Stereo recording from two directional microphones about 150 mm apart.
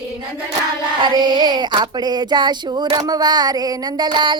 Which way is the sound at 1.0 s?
30° right (ahead or behind).